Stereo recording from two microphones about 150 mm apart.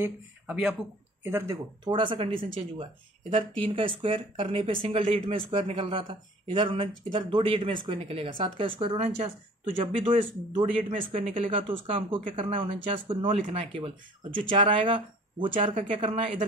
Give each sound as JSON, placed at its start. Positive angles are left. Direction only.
{"t": 0.0, "sound": "speech", "side_deg": -5}
{"t": 1.2, "sound": "speech", "side_deg": -15}
{"t": 1.9, "sound": "speech", "side_deg": -35}